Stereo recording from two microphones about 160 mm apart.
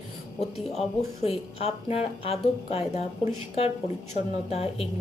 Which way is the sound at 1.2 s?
40° left (ahead or behind).